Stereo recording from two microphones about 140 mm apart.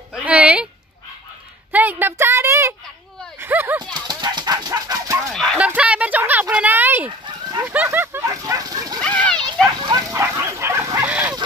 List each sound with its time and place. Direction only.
0.1 s speech: 10° right (ahead or behind)
1.7 s a woman's voice: 10° right (ahead or behind)
3.9 s a sound: 30° right (ahead or behind)
5.3 s speech: 5° left (ahead or behind)
5.6 s a sound: 10° right (ahead or behind); by 9.0 s 25° right (ahead or behind)
9.0 s children playing: 10° left (ahead or behind)
9.8 s dog: 30° right (ahead or behind); by 11.3 s 10° right (ahead or behind)